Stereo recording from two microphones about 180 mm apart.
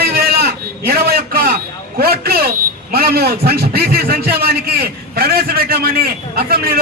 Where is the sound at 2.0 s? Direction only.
60° right (ahead or behind).